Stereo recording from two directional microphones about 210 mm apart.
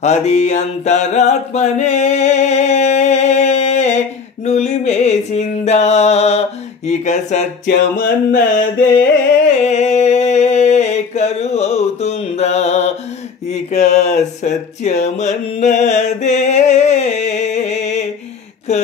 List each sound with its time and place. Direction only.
0.0 s mantra: 30° left (ahead or behind)
4.5 s music: 30° left (ahead or behind)
6.9 s speech: 35° left (ahead or behind)
7.6 s music: 45° left (ahead or behind)
9.7 s a sound: 30° left (ahead or behind)